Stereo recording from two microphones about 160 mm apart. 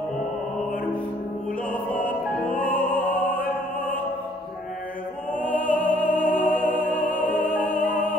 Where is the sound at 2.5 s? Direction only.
10° left (ahead or behind).